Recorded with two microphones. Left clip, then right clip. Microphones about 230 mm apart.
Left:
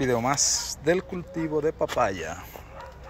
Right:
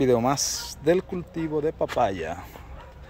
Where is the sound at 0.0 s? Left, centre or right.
Right.